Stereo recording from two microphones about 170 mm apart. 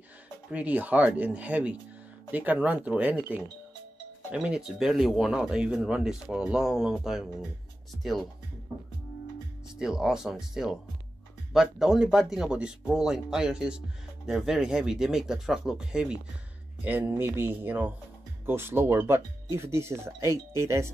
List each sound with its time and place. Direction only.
0.5 s speech: 10° right (ahead or behind)
9.8 s speech: 5° right (ahead or behind)